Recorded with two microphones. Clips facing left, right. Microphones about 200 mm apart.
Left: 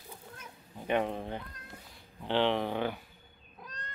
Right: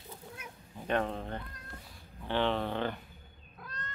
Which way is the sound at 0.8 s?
10° left (ahead or behind).